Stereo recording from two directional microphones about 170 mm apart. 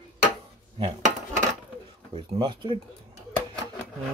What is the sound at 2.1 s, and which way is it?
Speech, 30° right (ahead or behind).